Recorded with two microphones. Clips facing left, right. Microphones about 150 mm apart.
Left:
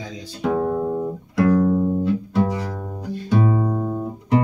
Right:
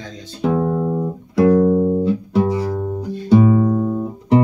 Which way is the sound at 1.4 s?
20° right (ahead or behind).